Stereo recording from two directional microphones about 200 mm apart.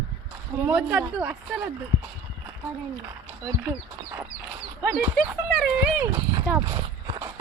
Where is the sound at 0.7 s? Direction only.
5° right (ahead or behind).